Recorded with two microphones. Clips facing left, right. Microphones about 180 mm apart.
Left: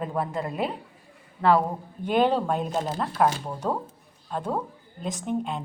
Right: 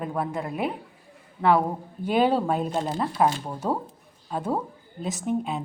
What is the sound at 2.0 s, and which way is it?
A woman's voice, 5° right (ahead or behind).